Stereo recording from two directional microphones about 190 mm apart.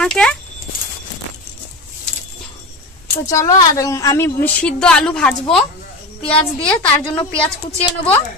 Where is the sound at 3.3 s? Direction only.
15° left (ahead or behind).